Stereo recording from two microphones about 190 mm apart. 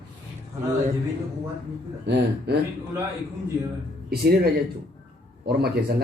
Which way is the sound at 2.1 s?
60° right (ahead or behind).